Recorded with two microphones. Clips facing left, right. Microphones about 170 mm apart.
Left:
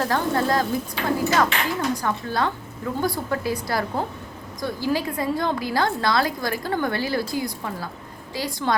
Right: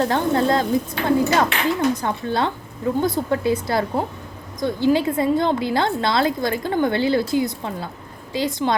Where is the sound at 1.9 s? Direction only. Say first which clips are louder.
Right 2 dB; 25° right (ahead or behind).